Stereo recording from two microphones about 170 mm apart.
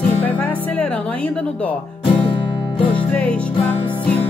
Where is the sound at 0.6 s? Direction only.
10° left (ahead or behind).